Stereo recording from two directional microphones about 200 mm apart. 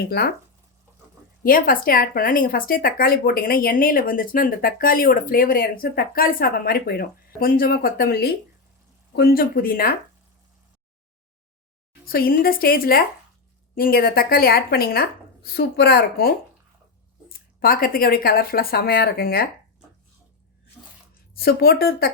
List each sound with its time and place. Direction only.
1.5 s speech: 45° left (ahead or behind)
12.0 s speech: 45° left (ahead or behind)
21.3 s speech: 50° left (ahead or behind)